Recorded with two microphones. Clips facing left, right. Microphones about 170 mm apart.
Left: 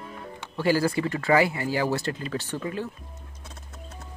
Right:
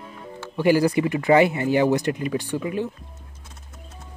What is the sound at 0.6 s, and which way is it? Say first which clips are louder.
Speech: right 5 dB; 15° right (ahead or behind).